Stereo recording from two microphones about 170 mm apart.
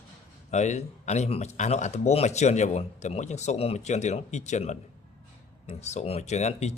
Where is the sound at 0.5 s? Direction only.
45° left (ahead or behind).